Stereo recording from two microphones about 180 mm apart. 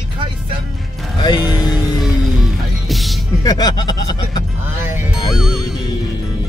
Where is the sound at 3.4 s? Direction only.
20° left (ahead or behind).